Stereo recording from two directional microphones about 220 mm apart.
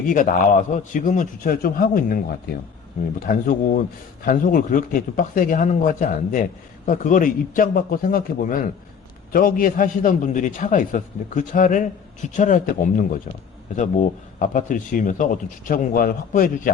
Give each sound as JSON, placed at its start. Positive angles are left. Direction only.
{"t": 0.1, "sound": "a man's voice", "side_deg": 35}
{"t": 14.3, "sound": "a man's voice", "side_deg": 35}